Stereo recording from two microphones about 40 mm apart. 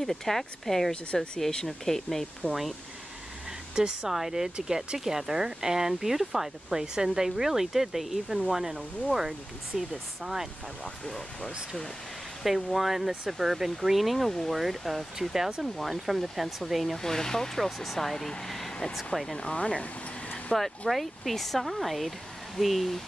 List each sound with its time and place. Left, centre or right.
0.0 s speech: centre
2.4 s speech: left
3.7 s speech: centre
11.1 s speech: centre
12.4 s speech: centre
17.0 s speech: centre
18.5 s vehicle: centre
19.3 s a sound: left
20.9 s speech: centre